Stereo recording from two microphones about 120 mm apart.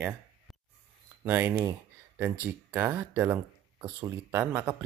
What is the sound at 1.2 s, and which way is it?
Speech, 20° right (ahead or behind).